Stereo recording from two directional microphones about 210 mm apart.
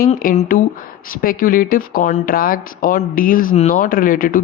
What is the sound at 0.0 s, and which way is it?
Speech, 40° left (ahead or behind).